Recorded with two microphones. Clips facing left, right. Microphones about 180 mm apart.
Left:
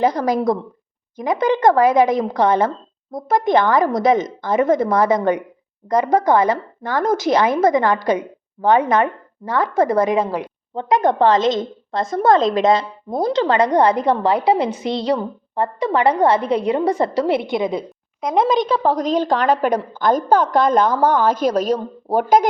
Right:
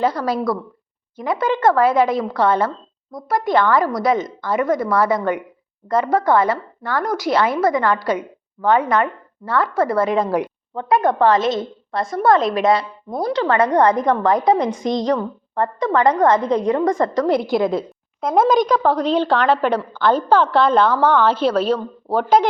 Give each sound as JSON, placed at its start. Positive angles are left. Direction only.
{"t": 0.0, "sound": "a woman's voice", "side_deg": 20}
{"t": 18.9, "sound": "a woman's voice", "side_deg": 40}